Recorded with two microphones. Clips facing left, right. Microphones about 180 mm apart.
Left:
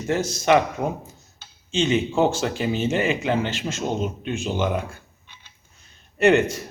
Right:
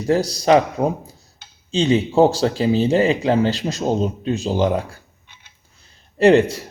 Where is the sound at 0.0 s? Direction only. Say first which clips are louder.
Right 5 dB; 35° right (ahead or behind).